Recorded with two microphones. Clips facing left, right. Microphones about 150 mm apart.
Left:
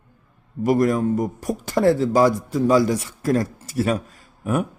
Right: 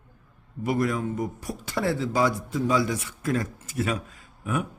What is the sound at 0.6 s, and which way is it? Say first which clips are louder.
Speech: left 7 dB; 40° left (ahead or behind).